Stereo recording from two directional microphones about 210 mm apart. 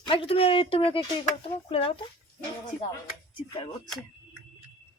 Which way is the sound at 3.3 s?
25° left (ahead or behind).